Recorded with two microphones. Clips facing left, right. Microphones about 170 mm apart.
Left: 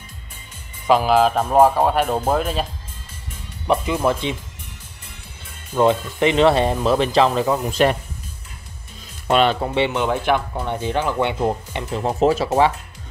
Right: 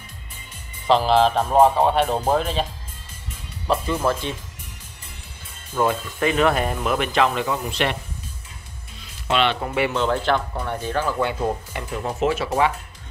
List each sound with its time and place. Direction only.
0.8 s speech: 10° left (ahead or behind)
3.6 s speech: 15° left (ahead or behind)
5.8 s speech: 20° left (ahead or behind); by 8.0 s 40° left (ahead or behind)
9.3 s speech: 40° left (ahead or behind)
9.8 s speech: 20° left (ahead or behind)